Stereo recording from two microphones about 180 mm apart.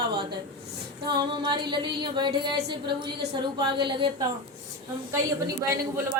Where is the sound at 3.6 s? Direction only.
25° right (ahead or behind).